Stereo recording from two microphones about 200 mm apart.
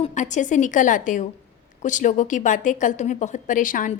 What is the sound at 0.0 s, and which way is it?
A woman's voice, 35° left (ahead or behind).